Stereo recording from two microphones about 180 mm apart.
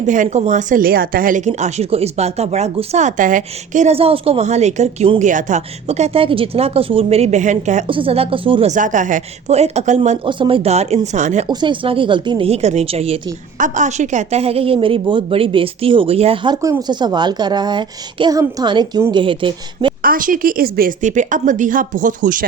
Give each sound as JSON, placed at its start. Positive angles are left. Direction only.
{"t": 0.0, "sound": "speech", "side_deg": -45}
{"t": 7.9, "sound": "a woman's voice", "side_deg": -30}
{"t": 8.7, "sound": "a woman's voice", "side_deg": -45}
{"t": 10.2, "sound": "speech", "side_deg": -25}
{"t": 11.4, "sound": "a woman's voice", "side_deg": -25}
{"t": 20.0, "sound": "a woman's voice", "side_deg": -50}